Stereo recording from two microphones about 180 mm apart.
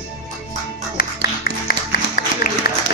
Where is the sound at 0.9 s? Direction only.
55° left (ahead or behind).